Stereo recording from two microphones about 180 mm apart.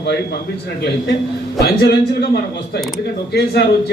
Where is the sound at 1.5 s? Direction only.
65° left (ahead or behind).